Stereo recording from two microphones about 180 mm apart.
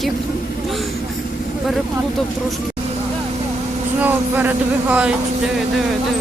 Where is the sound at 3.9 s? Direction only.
10° right (ahead or behind).